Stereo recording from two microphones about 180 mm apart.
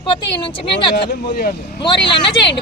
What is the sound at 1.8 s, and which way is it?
Speech, 25° left (ahead or behind).